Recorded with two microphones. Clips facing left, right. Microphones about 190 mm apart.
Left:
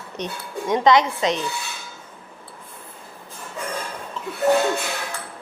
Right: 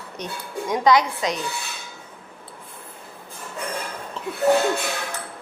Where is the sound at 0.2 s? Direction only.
20° left (ahead or behind).